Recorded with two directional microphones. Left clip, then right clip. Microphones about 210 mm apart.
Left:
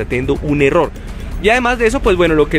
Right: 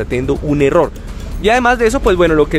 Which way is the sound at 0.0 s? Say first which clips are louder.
Even; centre (ahead or behind).